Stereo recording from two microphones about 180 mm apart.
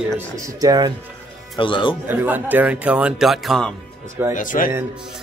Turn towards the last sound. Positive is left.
turn(degrees=50)  # may be behind; listen again after turning